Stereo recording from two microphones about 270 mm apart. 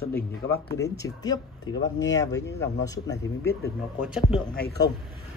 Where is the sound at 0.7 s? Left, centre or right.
Centre.